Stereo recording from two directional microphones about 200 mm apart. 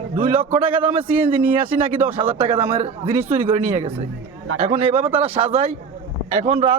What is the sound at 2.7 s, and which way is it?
A man's voice, 30° right (ahead or behind).